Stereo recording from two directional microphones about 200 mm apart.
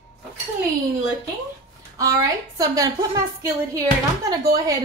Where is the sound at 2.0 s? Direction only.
15° right (ahead or behind).